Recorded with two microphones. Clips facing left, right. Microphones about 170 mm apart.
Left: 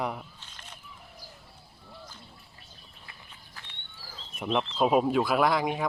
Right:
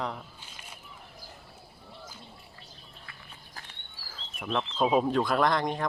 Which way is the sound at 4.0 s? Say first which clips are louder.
Left 4 dB; 20° left (ahead or behind).